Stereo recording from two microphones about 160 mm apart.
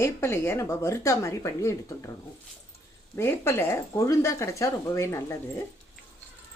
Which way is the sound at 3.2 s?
15° left (ahead or behind).